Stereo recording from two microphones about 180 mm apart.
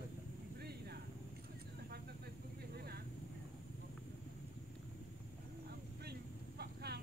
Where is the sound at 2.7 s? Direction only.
60° right (ahead or behind).